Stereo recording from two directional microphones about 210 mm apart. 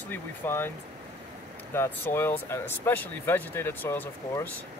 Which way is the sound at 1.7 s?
10° left (ahead or behind).